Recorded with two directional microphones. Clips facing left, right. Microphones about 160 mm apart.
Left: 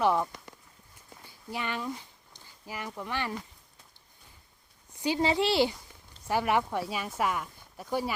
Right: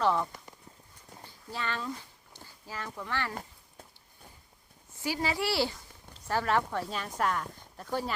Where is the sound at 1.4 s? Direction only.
15° left (ahead or behind).